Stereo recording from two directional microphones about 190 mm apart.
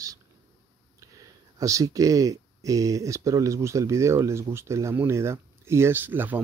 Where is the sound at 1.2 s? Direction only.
15° right (ahead or behind).